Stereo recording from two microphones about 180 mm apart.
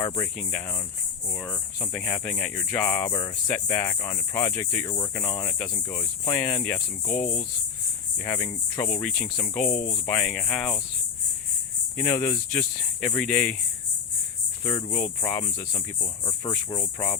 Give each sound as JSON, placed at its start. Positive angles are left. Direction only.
{"t": 1.4, "sound": "speech", "side_deg": 10}
{"t": 8.2, "sound": "speech", "side_deg": 15}
{"t": 9.0, "sound": "speech", "side_deg": 5}
{"t": 9.6, "sound": "speech", "side_deg": 50}
{"t": 9.9, "sound": "speech", "side_deg": 10}
{"t": 11.9, "sound": "speech", "side_deg": 15}
{"t": 14.7, "sound": "speech", "side_deg": 30}
{"t": 14.9, "sound": "speech", "side_deg": 10}